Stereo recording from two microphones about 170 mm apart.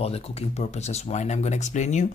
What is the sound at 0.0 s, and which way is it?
Speech, 35° left (ahead or behind).